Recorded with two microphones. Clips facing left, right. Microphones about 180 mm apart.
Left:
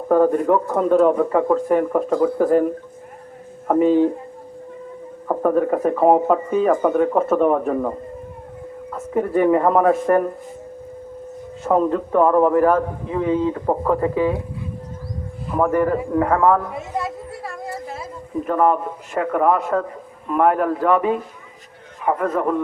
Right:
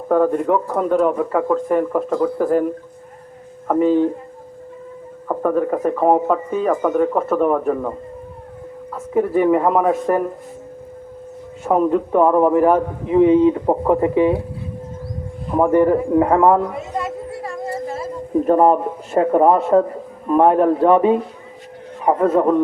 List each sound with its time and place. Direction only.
0.1 s speech: centre (ahead or behind)
3.7 s speech: 5° left (ahead or behind)
5.3 s speech: 5° left (ahead or behind)
9.1 s speech: 5° right (ahead or behind)
11.6 s a man's voice: 10° right (ahead or behind)
15.5 s speech: 25° right (ahead or behind)
18.4 s a man's voice: 30° right (ahead or behind)